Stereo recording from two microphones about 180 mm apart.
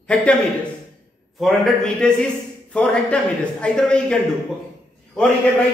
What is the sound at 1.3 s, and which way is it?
A man's voice, centre (ahead or behind).